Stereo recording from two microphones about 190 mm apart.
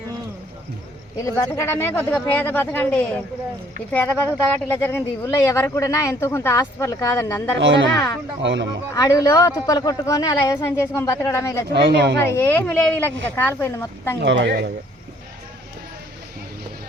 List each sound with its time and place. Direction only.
1.1 s speech: 15° left (ahead or behind)
7.6 s speech: 75° right (ahead or behind)
9.0 s speech: 15° left (ahead or behind)
11.7 s speech: 60° right (ahead or behind)
12.2 s speech: 10° left (ahead or behind)
14.2 s speech: 75° right (ahead or behind)